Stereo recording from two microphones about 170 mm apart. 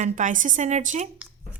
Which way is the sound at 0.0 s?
50° right (ahead or behind).